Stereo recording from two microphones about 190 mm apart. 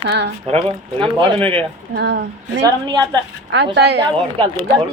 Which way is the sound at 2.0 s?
60° right (ahead or behind).